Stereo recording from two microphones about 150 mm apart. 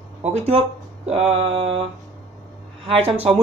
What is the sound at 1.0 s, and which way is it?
Speech, 40° right (ahead or behind).